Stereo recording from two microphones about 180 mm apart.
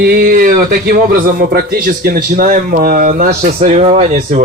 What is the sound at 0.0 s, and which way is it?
Speech, 55° right (ahead or behind).